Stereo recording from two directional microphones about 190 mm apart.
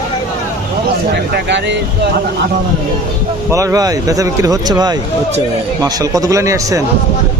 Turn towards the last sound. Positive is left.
turn(degrees=-15)  # may be behind; listen again after turning